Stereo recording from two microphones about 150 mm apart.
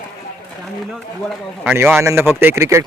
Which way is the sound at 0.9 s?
Centre (ahead or behind).